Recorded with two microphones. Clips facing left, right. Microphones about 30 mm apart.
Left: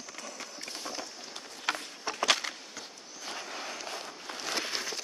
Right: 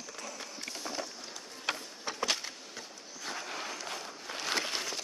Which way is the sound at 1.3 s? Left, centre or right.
Left.